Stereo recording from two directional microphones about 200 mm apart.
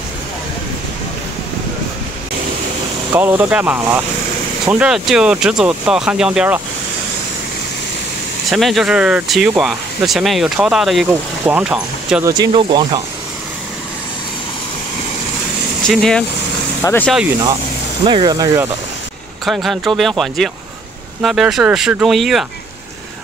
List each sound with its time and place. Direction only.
3.1 s speech: 10° right (ahead or behind)
8.5 s speech: centre (ahead or behind)
12.3 s speech: 20° right (ahead or behind)
15.9 s speech: centre (ahead or behind)
18.0 s speech: 25° right (ahead or behind)
19.4 s speech: centre (ahead or behind)